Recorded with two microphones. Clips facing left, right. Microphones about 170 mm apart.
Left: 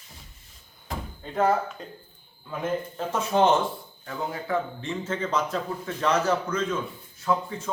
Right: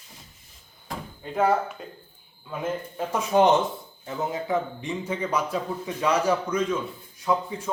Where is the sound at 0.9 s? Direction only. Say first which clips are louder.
Even; 5° right (ahead or behind).